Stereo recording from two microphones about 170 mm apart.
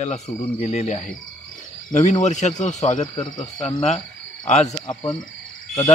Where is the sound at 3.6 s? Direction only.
40° left (ahead or behind).